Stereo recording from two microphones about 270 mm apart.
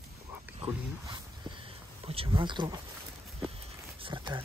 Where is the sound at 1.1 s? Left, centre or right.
Centre.